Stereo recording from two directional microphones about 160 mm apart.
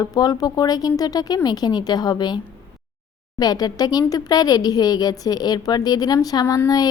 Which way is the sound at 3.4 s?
25° left (ahead or behind).